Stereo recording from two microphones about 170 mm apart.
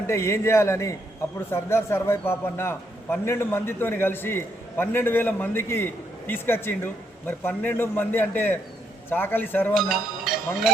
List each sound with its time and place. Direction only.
0.1 s a man's voice: 15° left (ahead or behind)
9.7 s speech: centre (ahead or behind)